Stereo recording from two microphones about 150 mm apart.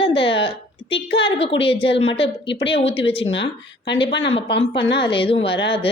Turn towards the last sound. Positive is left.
turn(degrees=40)  # may be behind; listen again after turning